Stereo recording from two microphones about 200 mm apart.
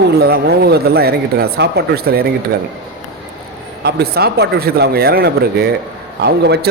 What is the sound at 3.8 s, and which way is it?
Speech, 50° right (ahead or behind).